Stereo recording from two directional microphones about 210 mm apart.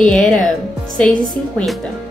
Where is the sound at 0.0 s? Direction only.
5° left (ahead or behind).